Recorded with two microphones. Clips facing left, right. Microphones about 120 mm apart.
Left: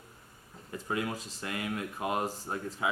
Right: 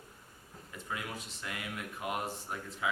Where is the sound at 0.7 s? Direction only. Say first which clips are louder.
Left 7 dB; 35° left (ahead or behind).